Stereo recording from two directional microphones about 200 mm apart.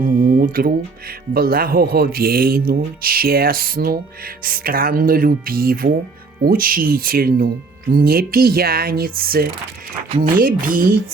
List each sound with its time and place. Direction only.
0.0 s speech: 45° right (ahead or behind)